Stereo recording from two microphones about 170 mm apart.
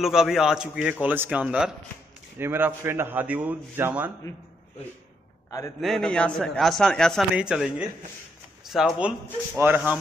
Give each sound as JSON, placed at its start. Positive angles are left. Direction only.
{"t": 0.0, "sound": "a man's voice", "side_deg": 0}
{"t": 5.8, "sound": "a man's voice", "side_deg": 0}
{"t": 9.6, "sound": "a man's voice", "side_deg": -15}